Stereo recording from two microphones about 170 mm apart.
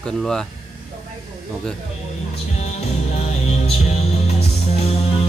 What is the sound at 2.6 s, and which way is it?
Music, 35° left (ahead or behind).